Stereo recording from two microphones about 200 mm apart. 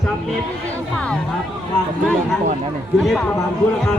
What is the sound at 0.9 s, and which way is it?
Speech, 5° left (ahead or behind).